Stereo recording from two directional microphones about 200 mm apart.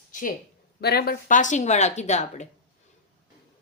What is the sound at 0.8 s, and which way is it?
A woman's voice, 50° left (ahead or behind).